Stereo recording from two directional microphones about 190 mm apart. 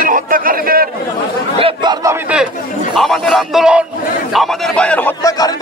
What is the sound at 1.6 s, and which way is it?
Chatter, 25° right (ahead or behind).